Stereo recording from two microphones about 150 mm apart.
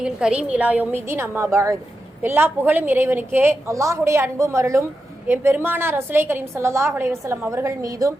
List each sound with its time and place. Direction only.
0.0 s a woman's voice: 5° right (ahead or behind); by 8.1 s 20° right (ahead or behind)